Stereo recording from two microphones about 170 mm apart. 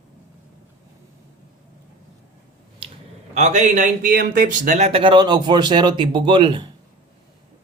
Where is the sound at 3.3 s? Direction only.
45° right (ahead or behind).